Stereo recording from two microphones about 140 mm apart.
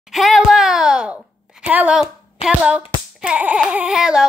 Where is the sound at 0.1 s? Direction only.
Centre (ahead or behind).